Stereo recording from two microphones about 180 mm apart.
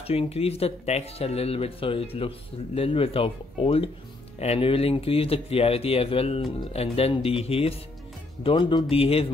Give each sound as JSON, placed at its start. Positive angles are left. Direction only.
{"t": 0.0, "sound": "speech", "side_deg": 35}